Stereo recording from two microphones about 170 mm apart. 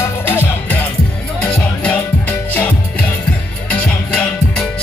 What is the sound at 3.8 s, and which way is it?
Music, 5° left (ahead or behind).